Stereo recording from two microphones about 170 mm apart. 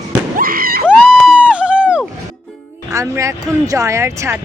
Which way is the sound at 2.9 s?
20° right (ahead or behind).